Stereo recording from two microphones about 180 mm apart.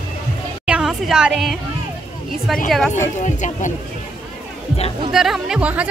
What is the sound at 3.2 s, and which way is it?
Speech, 40° left (ahead or behind).